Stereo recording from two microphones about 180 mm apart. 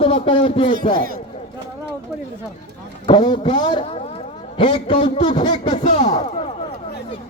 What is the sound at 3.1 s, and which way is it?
A man's voice, 25° left (ahead or behind).